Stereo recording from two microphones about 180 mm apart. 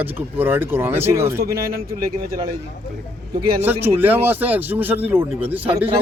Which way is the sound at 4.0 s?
10° right (ahead or behind).